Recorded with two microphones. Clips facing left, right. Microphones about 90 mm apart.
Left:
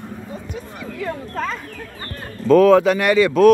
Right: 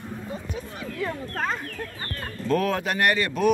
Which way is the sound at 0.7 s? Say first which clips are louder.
Left 3 dB; 75° left (ahead or behind).